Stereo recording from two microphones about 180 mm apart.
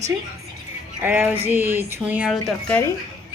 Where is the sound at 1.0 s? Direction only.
10° right (ahead or behind).